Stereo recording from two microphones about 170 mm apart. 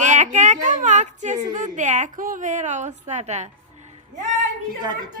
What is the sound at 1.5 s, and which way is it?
Speech, 45° right (ahead or behind).